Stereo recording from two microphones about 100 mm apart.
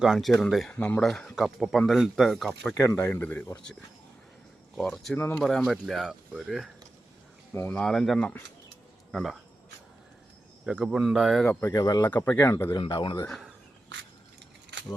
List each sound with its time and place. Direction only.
0.0 s speech: centre (ahead or behind)
0.7 s speech: 15° left (ahead or behind); by 2.5 s centre (ahead or behind)
2.7 s speech: 25° left (ahead or behind)
4.8 s speech: 5° left (ahead or behind)
5.1 s speech: 20° left (ahead or behind)
5.4 s speech: centre (ahead or behind)
7.5 s speech: 25° left (ahead or behind)
7.9 s speech: centre (ahead or behind)
10.7 s speech: 5° right (ahead or behind)
11.6 s speech: 35° left (ahead or behind)
12.0 s speech: 20° left (ahead or behind)
12.9 s a man's voice: 50° left (ahead or behind)